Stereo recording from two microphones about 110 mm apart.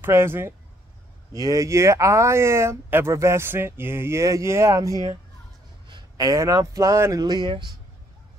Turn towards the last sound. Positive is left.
turn(degrees=-45)  # may be behind; listen again after turning